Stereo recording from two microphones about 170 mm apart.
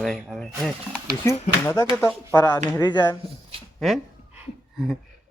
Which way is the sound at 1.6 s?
15° left (ahead or behind).